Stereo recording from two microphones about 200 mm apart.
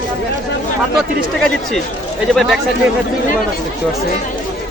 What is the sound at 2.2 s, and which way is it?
Speech, centre (ahead or behind).